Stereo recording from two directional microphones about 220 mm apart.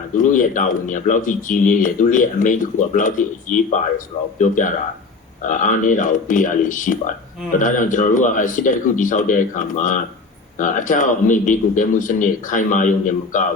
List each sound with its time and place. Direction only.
0.2 s speech: 35° left (ahead or behind)